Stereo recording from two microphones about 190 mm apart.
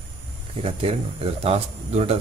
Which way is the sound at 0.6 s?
30° right (ahead or behind).